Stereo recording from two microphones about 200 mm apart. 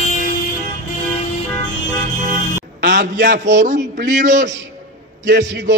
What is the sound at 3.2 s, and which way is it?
Speech, 60° right (ahead or behind).